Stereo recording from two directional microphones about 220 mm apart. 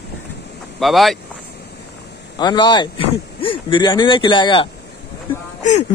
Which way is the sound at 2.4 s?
20° left (ahead or behind).